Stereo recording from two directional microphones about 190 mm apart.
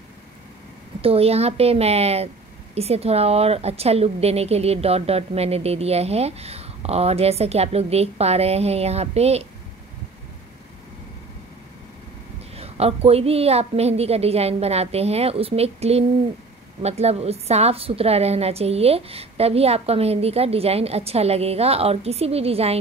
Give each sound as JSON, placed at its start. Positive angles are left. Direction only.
{"t": 1.0, "sound": "a woman's voice", "side_deg": -30}
{"t": 12.5, "sound": "a woman's voice", "side_deg": -30}